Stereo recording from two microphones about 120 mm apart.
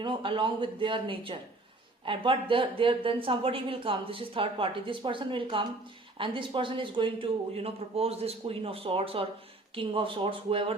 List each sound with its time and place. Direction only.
0.0 s speech: 45° right (ahead or behind)